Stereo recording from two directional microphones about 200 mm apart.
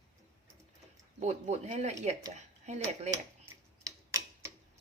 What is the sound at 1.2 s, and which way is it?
Speech, 35° right (ahead or behind).